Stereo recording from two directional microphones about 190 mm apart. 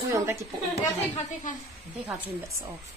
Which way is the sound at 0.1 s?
15° right (ahead or behind).